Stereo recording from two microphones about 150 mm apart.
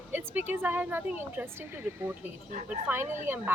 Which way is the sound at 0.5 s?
15° right (ahead or behind).